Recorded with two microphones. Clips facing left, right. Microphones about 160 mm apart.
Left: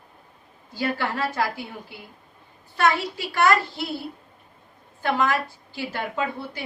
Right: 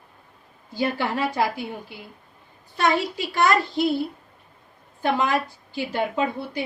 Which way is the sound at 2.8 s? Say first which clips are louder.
Even; 20° right (ahead or behind).